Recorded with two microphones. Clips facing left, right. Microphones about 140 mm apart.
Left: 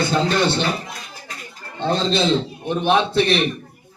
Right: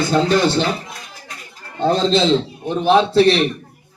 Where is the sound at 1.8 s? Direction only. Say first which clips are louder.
Right 4 dB; 40° right (ahead or behind).